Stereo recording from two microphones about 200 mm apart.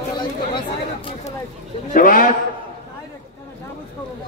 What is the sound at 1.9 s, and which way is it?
Speech, 45° left (ahead or behind).